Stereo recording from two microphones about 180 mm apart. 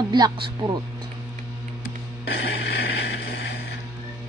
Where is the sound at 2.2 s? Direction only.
70° left (ahead or behind).